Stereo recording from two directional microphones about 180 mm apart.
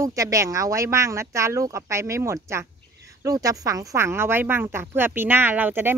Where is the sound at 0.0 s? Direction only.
20° right (ahead or behind).